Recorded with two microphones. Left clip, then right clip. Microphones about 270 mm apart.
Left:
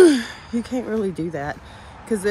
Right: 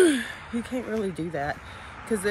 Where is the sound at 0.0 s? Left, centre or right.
Centre.